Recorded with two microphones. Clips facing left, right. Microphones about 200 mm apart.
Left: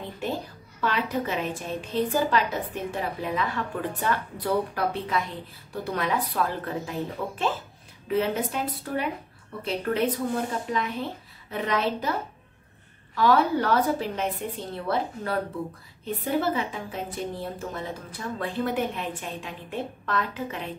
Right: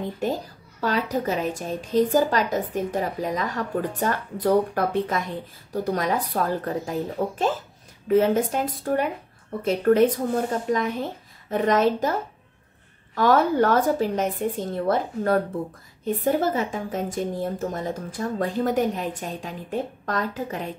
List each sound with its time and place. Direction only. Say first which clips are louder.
0.2 s a woman's voice: right 1 dB; 40° right (ahead or behind)